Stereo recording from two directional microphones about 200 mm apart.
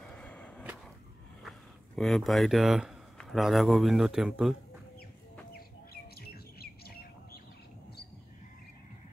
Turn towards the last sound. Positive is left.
turn(degrees=50)  # may be behind; listen again after turning